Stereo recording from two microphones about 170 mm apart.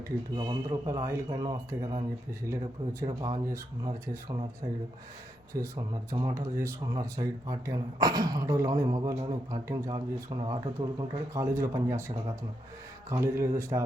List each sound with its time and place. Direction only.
0.3 s speech: 25° right (ahead or behind)
1.3 s speech: 30° right (ahead or behind)
3.0 s speech: 20° right (ahead or behind)
5.5 s speech: 20° right (ahead or behind)